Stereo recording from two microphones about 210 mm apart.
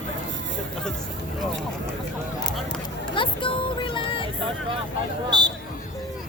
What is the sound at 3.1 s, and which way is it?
Vehicle, 25° left (ahead or behind).